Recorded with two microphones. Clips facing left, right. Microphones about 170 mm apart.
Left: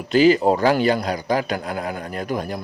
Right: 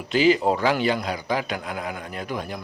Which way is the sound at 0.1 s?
45° left (ahead or behind).